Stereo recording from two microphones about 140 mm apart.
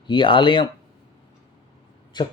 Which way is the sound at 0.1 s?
35° left (ahead or behind).